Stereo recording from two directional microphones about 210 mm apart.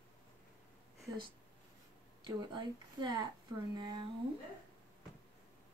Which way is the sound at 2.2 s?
20° right (ahead or behind).